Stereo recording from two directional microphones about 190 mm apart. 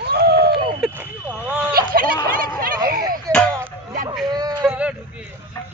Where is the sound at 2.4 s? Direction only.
50° right (ahead or behind).